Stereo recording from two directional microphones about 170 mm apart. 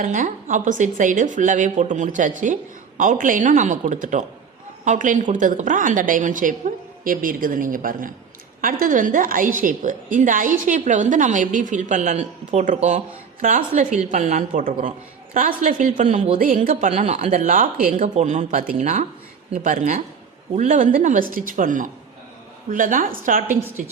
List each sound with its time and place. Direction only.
0.0 s a woman's voice: 50° right (ahead or behind)
18.0 s a woman's voice: 45° right (ahead or behind)